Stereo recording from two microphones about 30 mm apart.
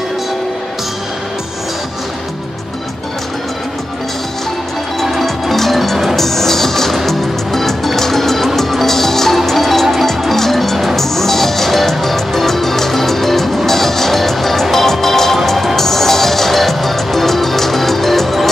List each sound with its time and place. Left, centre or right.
5.2 s music: centre
6.1 s music: centre